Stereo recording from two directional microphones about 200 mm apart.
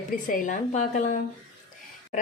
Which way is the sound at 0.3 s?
40° left (ahead or behind).